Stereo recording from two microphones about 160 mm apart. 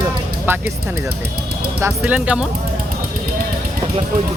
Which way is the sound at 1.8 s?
10° right (ahead or behind).